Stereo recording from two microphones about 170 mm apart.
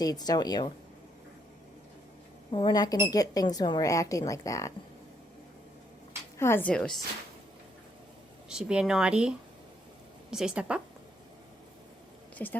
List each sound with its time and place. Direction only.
0.0 s a woman's voice: 25° left (ahead or behind)
2.5 s a woman's voice: 25° left (ahead or behind)
6.4 s a woman's voice: 10° left (ahead or behind)
8.4 s speech: 5° right (ahead or behind)
10.3 s speech: 5° right (ahead or behind)
12.4 s a woman's voice: 10° left (ahead or behind)